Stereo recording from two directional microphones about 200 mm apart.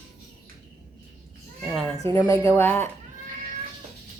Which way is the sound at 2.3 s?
10° left (ahead or behind).